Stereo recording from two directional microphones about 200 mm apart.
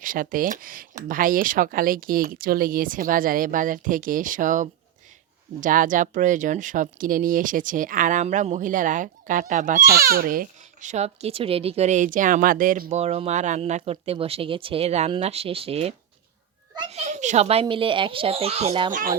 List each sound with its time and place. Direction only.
0.0 s a child's voice: 45° right (ahead or behind)
18.9 s speech: 40° right (ahead or behind)